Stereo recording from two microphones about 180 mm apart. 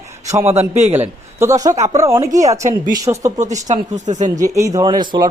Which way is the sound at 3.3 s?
40° right (ahead or behind).